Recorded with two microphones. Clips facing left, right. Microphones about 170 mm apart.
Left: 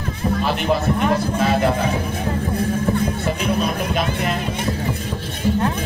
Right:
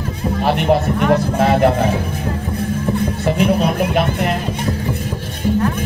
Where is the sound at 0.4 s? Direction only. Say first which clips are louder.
Right 7 dB; 65° right (ahead or behind).